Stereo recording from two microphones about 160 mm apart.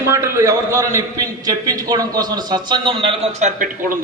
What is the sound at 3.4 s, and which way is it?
Speech, 55° right (ahead or behind).